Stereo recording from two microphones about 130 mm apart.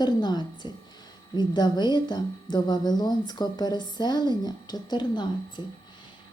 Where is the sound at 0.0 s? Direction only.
35° left (ahead or behind).